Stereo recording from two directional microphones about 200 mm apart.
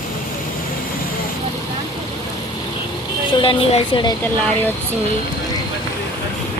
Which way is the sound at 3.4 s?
25° left (ahead or behind).